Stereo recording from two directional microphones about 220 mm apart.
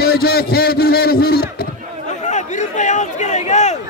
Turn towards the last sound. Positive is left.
turn(degrees=30)  # may be behind; listen again after turning